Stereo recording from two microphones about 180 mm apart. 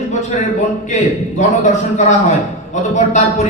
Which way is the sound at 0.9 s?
40° left (ahead or behind).